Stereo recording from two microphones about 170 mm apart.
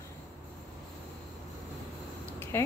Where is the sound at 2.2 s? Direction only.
15° left (ahead or behind).